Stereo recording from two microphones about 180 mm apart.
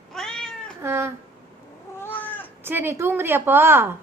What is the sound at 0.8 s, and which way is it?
Speech, 15° right (ahead or behind).